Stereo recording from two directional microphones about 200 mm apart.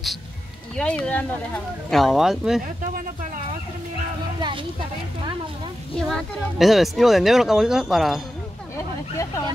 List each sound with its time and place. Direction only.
0.7 s speech: 5° left (ahead or behind)
5.9 s speech: centre (ahead or behind)
8.7 s speech: 15° left (ahead or behind)